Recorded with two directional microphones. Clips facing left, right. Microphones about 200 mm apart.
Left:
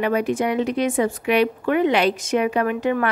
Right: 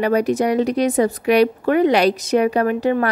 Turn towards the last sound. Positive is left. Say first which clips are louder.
# right 3 dB
turn(degrees=-35)  # may be behind; listen again after turning